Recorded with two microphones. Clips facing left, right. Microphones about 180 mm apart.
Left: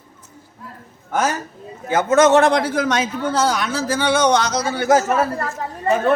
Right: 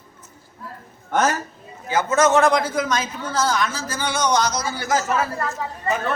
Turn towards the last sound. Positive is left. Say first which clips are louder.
# left 7 dB
turn(degrees=45)  # may be behind; listen again after turning